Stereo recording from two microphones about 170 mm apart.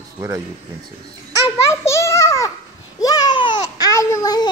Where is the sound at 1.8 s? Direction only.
15° left (ahead or behind).